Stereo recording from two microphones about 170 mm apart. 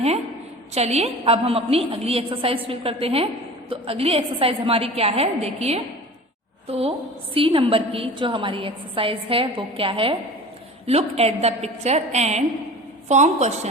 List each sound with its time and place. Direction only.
0.7 s a woman's voice: 40° right (ahead or behind)